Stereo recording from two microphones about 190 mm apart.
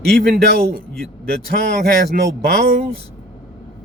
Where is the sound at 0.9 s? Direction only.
5° left (ahead or behind).